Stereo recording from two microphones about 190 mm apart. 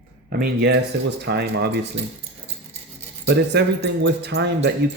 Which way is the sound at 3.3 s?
60° right (ahead or behind).